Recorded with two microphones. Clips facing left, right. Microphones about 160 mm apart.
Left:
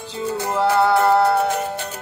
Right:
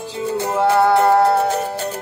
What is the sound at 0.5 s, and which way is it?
Music, 15° right (ahead or behind).